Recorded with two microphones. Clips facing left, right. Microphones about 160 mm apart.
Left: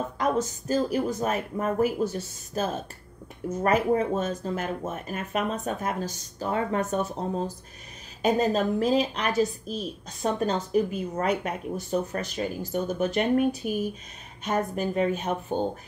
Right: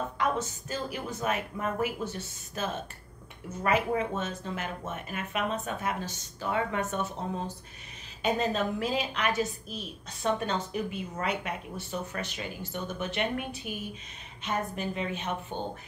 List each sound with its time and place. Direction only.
0.2 s a woman's voice: 40° left (ahead or behind)